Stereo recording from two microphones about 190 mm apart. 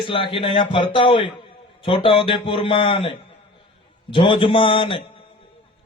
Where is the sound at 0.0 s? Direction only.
25° left (ahead or behind).